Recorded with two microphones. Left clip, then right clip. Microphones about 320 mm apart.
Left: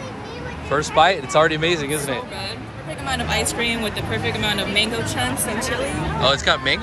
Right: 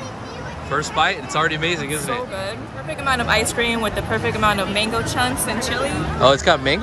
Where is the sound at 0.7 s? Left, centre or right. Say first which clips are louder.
Left 3 dB; centre.